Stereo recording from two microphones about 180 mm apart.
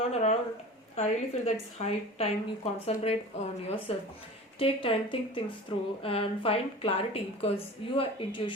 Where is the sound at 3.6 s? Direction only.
30° left (ahead or behind).